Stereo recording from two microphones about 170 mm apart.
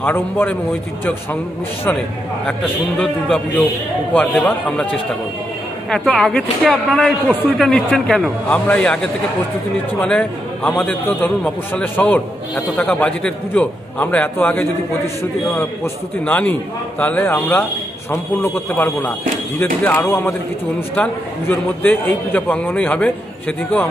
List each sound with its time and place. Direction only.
0.0 s a man's voice: 10° left (ahead or behind)
3.0 s a man's voice: 5° left (ahead or behind)